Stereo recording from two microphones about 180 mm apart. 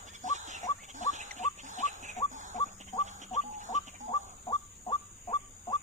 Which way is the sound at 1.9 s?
40° right (ahead or behind).